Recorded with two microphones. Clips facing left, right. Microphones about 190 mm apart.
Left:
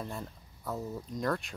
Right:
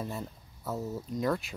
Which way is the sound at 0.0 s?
5° right (ahead or behind).